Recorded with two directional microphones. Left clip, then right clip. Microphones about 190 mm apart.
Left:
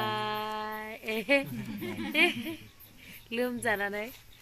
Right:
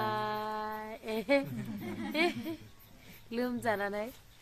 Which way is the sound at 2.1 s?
Centre (ahead or behind).